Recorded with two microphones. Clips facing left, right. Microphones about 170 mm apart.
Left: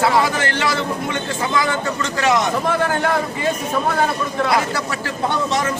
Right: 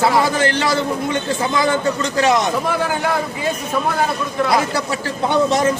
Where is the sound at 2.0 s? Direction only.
35° right (ahead or behind).